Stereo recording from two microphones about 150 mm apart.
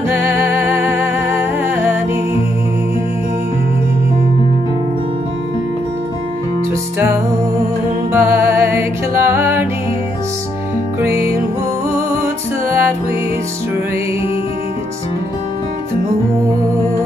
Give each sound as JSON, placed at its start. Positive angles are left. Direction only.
{"t": 0.1, "sound": "music", "side_deg": -15}
{"t": 8.1, "sound": "music", "side_deg": -15}
{"t": 12.6, "sound": "music", "side_deg": -15}